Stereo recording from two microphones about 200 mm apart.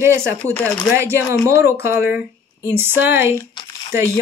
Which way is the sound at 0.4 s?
10° left (ahead or behind).